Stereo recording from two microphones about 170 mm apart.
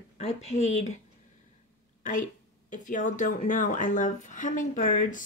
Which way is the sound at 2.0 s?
45° left (ahead or behind).